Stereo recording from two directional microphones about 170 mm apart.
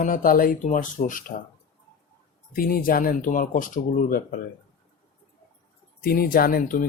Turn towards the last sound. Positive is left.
turn(degrees=55)  # may be behind; listen again after turning